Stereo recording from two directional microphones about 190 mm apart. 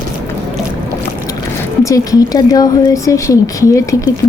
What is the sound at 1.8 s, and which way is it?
Speech, 20° left (ahead or behind).